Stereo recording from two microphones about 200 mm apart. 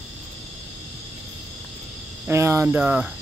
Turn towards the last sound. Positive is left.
turn(degrees=-5)  # may be behind; listen again after turning